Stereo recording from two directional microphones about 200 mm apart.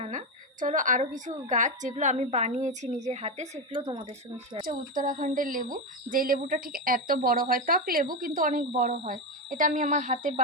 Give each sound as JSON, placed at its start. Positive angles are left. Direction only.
{"t": 0.0, "sound": "a woman's voice", "side_deg": -40}
{"t": 4.6, "sound": "a woman's voice", "side_deg": -45}